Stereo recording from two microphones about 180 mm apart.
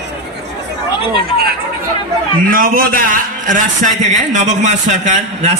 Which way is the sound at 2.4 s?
50° right (ahead or behind).